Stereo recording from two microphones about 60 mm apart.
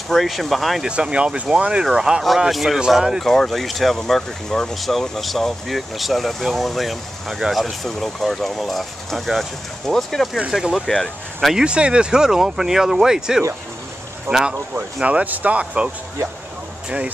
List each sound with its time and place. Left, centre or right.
0.1 s speech: centre
0.8 s speech: centre
3.3 s speech: centre
7.8 s speech: centre
11.5 s speech: centre
14.3 s speech: right
15.0 s speech: right